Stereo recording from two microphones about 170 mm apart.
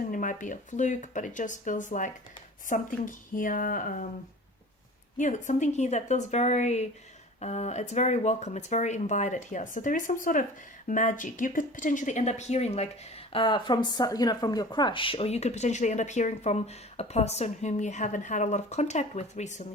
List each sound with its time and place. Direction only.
0.1 s speech: 50° left (ahead or behind)
5.1 s speech: 45° left (ahead or behind)